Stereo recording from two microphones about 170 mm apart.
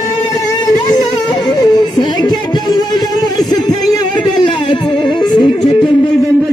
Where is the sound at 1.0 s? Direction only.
25° left (ahead or behind).